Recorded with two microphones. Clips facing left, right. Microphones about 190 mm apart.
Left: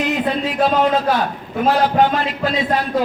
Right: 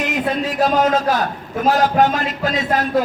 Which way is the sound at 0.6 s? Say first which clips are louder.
Even; 45° right (ahead or behind).